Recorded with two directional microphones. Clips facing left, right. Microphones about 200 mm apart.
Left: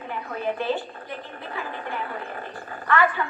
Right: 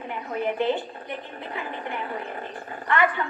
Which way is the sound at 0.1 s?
20° right (ahead or behind).